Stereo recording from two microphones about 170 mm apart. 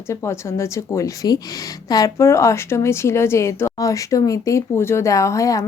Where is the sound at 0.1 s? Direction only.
15° left (ahead or behind).